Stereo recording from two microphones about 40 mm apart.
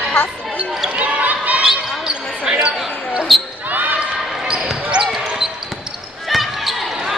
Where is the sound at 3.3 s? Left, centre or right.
Centre.